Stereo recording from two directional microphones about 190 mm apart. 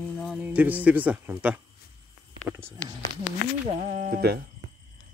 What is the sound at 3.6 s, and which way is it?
Speech, 35° right (ahead or behind).